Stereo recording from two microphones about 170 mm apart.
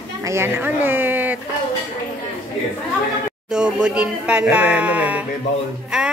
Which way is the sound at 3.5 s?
5° right (ahead or behind).